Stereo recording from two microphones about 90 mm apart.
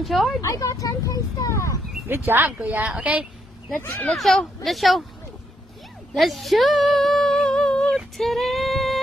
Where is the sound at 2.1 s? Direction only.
25° right (ahead or behind).